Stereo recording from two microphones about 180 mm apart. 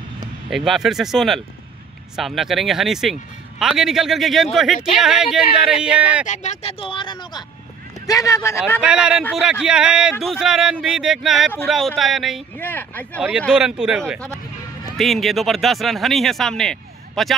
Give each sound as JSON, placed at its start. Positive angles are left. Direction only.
{"t": 0.5, "sound": "speech", "side_deg": 0}
{"t": 6.2, "sound": "speech", "side_deg": 40}
{"t": 8.8, "sound": "speech", "side_deg": -5}
{"t": 12.5, "sound": "speech", "side_deg": 10}
{"t": 13.5, "sound": "speech", "side_deg": -5}